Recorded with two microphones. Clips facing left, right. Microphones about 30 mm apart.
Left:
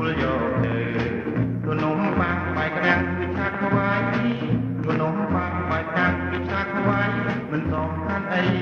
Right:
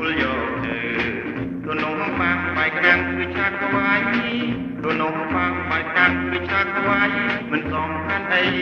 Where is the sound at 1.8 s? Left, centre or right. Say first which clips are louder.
Right 1 dB; right.